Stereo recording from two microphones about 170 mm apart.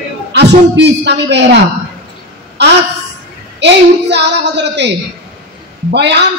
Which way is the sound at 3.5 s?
90° right.